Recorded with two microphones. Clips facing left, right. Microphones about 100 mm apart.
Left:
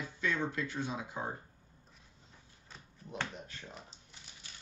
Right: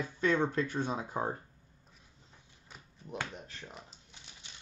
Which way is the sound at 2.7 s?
15° right (ahead or behind).